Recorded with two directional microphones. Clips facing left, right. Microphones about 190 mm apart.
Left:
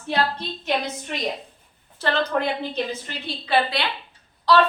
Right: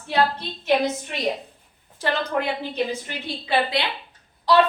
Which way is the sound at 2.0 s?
15° right (ahead or behind).